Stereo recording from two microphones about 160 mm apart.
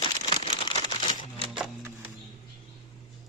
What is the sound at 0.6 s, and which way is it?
Crumpling, 30° left (ahead or behind).